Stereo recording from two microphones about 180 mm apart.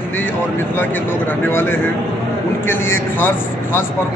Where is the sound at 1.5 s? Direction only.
15° left (ahead or behind).